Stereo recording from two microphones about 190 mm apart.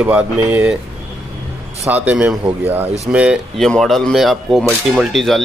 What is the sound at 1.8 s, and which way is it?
Speech, 10° right (ahead or behind).